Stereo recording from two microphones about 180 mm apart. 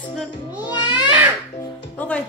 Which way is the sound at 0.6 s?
25° left (ahead or behind).